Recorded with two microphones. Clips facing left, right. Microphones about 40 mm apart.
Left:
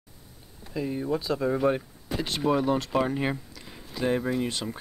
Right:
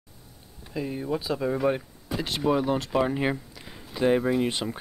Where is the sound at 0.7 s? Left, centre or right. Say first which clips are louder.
Left 1 dB; centre.